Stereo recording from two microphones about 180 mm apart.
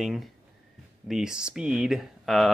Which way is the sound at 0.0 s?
Centre (ahead or behind).